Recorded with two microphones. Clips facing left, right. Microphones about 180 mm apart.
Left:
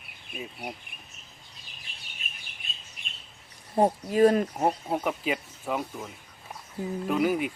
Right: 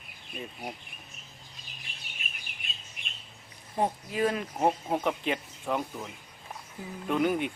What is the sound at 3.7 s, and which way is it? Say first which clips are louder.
Speech: left 6 dB; 40° left (ahead or behind).